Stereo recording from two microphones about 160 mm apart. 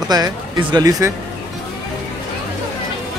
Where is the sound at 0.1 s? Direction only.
25° right (ahead or behind).